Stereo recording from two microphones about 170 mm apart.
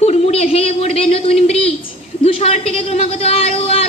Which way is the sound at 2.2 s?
35° left (ahead or behind).